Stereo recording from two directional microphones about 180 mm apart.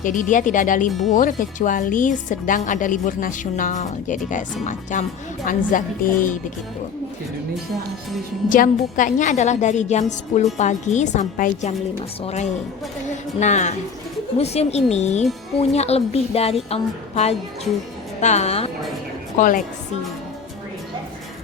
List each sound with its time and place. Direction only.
0.0 s a woman's voice: 45° left (ahead or behind)
0.9 s speech: centre (ahead or behind)
1.1 s a woman's voice: 45° left (ahead or behind)
8.4 s a woman's voice: 50° left (ahead or behind)
11.9 s a woman's voice: 35° left (ahead or behind)
19.4 s a woman's voice: 50° left (ahead or behind)